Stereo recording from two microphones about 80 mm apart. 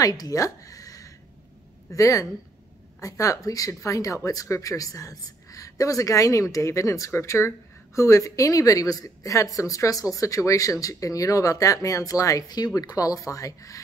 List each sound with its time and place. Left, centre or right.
0.0 s speech: left